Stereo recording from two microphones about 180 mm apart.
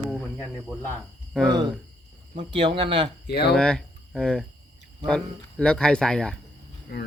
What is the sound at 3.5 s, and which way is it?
Speech, 5° left (ahead or behind).